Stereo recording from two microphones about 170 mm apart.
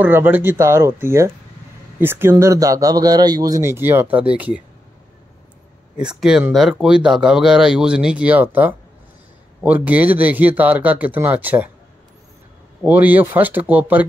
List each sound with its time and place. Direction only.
0.0 s speech: 10° right (ahead or behind)
5.9 s speech: 5° right (ahead or behind)
12.8 s speech: 10° right (ahead or behind)